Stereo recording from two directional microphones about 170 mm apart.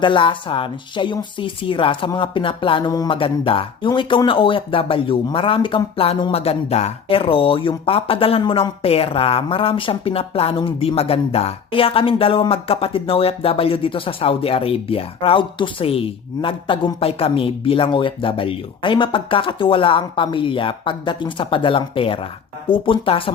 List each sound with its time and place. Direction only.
0.0 s speech: 30° left (ahead or behind)